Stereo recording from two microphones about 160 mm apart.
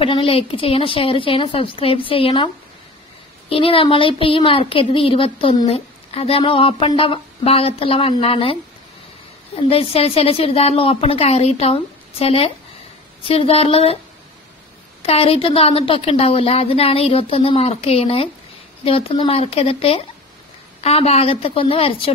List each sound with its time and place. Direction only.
0.0 s speech: 35° left (ahead or behind)
9.6 s speech: 35° left (ahead or behind)
15.0 s speech: 40° left (ahead or behind)